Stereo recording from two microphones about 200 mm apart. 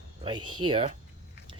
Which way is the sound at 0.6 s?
25° right (ahead or behind).